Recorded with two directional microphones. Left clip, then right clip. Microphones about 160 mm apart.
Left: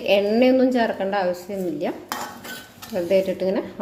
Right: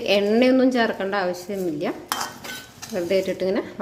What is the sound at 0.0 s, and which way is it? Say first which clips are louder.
Speech: left 1 dB; 15° right (ahead or behind).